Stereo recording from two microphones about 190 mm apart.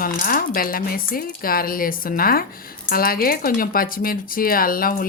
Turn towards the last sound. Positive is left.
turn(degrees=50)  # may be behind; listen again after turning